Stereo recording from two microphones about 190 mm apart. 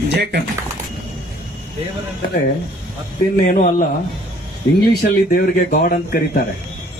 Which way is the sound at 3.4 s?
45° left (ahead or behind).